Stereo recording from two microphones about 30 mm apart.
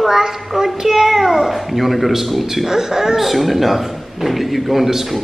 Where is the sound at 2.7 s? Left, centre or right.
Centre.